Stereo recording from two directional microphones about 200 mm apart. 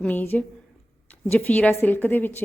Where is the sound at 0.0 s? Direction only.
10° left (ahead or behind).